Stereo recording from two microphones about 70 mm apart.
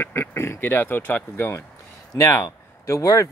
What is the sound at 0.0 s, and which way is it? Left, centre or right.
Speech, left.